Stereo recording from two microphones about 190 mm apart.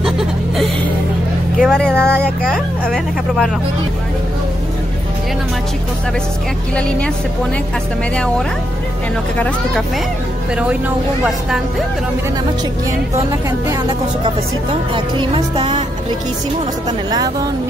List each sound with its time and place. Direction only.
1.6 s speech: centre (ahead or behind)
2.0 s speech: 10° right (ahead or behind)
13.3 s speech: 15° right (ahead or behind)
14.2 s speech: 30° right (ahead or behind)